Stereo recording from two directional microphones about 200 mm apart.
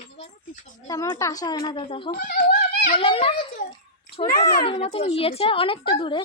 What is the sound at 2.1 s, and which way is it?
Speech, 45° left (ahead or behind).